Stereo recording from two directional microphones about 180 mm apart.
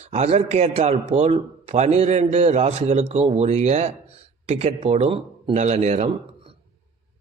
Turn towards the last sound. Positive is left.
turn(degrees=-35)  # may be behind; listen again after turning